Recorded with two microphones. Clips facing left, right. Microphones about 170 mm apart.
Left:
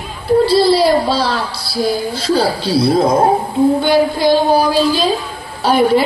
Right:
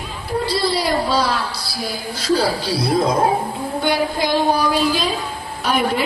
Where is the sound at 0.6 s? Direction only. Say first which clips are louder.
Left 8 dB; 30° left (ahead or behind).